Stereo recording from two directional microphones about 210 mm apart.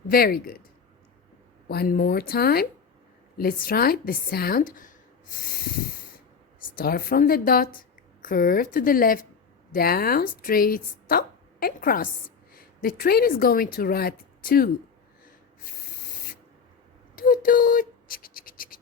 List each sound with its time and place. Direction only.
0.1 s a woman's voice: 45° left (ahead or behind)
1.6 s a woman's voice: 50° left (ahead or behind)
6.7 s a woman's voice: 45° left (ahead or behind)
17.2 s a sound: 45° left (ahead or behind)